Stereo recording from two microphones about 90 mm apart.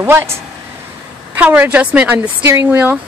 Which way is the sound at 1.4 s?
15° right (ahead or behind).